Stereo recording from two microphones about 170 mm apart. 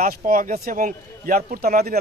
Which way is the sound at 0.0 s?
55° right (ahead or behind).